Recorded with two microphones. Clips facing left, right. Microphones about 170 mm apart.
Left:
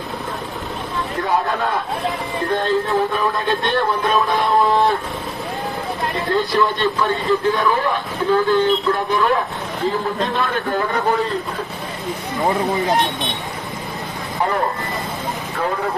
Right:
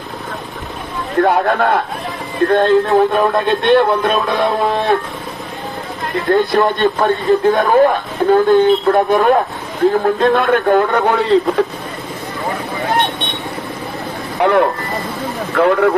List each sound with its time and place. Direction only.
1.2 s speech: 75° right (ahead or behind)
6.3 s speech: 55° right (ahead or behind)
14.4 s speech: 75° right (ahead or behind)